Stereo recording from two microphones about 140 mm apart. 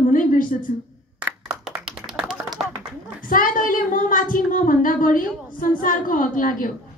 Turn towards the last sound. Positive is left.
turn(degrees=70)  # may be behind; listen again after turning